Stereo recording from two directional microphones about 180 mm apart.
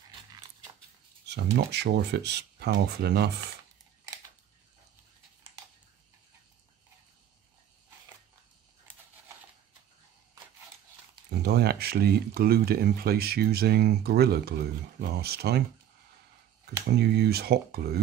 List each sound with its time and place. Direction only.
1.2 s speech: 70° right (ahead or behind)
11.4 s speech: 65° right (ahead or behind)
16.9 s speech: 65° right (ahead or behind)